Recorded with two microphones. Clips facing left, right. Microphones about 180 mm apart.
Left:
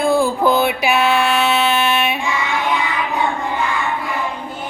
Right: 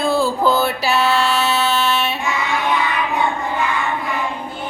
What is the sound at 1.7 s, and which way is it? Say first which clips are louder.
Music: left 1 dB; 15° left (ahead or behind).